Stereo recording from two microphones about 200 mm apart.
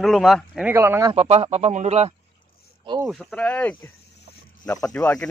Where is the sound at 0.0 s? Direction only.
Centre (ahead or behind).